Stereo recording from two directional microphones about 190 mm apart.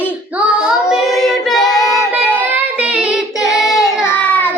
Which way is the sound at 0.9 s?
Centre (ahead or behind).